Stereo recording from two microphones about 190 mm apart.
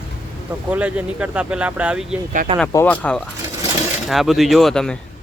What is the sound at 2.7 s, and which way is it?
Speech, 10° left (ahead or behind).